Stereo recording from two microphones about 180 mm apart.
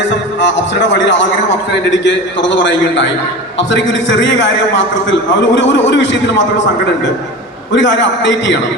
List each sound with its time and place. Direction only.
0.0 s a man's voice: 90° left
7.7 s a man's voice: 85° left